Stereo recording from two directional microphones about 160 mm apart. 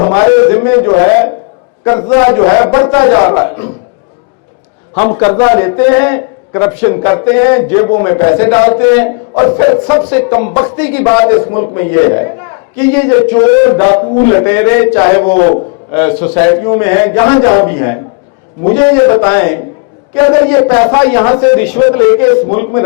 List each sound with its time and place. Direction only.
0.1 s a man's voice: 15° left (ahead or behind)
4.9 s a man's voice: 20° left (ahead or behind)
11.5 s a man's voice: 35° left (ahead or behind)
11.8 s a man's voice: 15° left (ahead or behind)